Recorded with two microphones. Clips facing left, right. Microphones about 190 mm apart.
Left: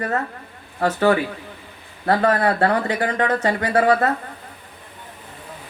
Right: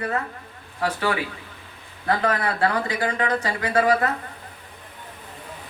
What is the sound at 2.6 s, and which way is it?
A woman's voice, 35° left (ahead or behind).